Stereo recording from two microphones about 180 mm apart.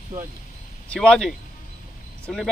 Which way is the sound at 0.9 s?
5° left (ahead or behind).